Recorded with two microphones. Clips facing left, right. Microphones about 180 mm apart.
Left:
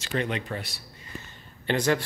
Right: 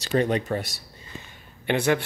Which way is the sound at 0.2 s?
40° right (ahead or behind).